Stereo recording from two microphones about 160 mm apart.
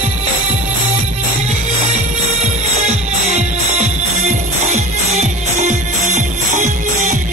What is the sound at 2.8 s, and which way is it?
Music, 45° right (ahead or behind).